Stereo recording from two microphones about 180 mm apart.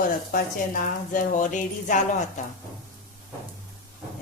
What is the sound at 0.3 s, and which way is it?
A woman's voice, 50° left (ahead or behind).